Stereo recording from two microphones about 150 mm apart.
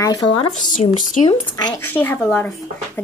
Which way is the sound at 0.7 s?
60° left (ahead or behind).